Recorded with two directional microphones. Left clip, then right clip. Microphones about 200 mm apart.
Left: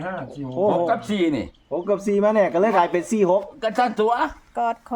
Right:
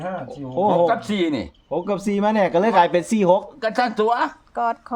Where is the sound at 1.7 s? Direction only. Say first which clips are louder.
Left 2 dB; 65° right (ahead or behind).